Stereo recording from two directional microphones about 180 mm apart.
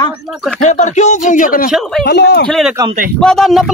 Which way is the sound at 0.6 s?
45° left (ahead or behind).